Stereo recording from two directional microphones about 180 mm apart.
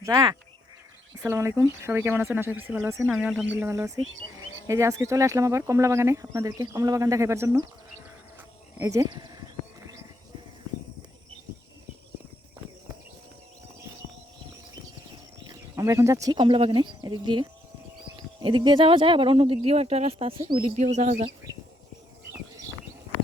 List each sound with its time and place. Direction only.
0.0 s speech: 20° right (ahead or behind)
8.8 s speech: 15° right (ahead or behind)
15.4 s speech: 15° right (ahead or behind); by 21.3 s 40° right (ahead or behind)